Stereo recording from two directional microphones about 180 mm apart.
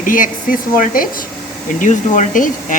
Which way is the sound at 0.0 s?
50° left (ahead or behind).